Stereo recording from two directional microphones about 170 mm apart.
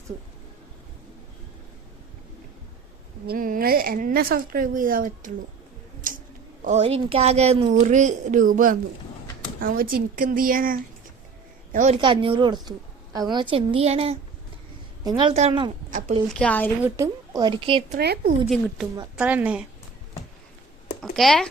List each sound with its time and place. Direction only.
3.2 s speech: 55° right (ahead or behind)
6.6 s a woman's voice: 40° right (ahead or behind)
11.9 s a woman's voice: 30° right (ahead or behind)
15.9 s a woman's voice: 50° right (ahead or behind)
16.3 s speech: 5° left (ahead or behind)
16.8 s a woman's voice: 20° right (ahead or behind)
17.9 s speech: 70° right (ahead or behind)
18.4 s a woman's voice: centre (ahead or behind)
21.0 s speech: centre (ahead or behind)